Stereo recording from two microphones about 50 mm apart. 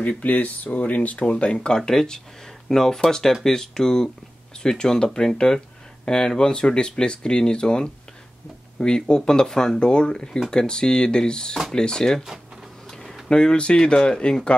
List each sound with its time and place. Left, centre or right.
0.2 s speech: left
1.8 s speech: centre
13.3 s speech: centre